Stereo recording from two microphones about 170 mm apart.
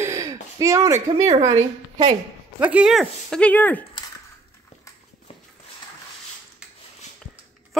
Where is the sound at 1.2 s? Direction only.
45° right (ahead or behind).